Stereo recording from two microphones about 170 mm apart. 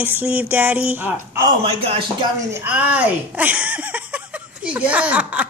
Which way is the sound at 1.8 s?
30° right (ahead or behind).